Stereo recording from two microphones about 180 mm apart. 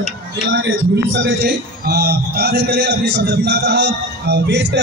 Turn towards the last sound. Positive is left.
turn(degrees=-75)  # may be behind; listen again after turning